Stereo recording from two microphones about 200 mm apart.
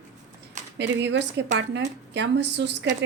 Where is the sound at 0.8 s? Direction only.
60° right (ahead or behind).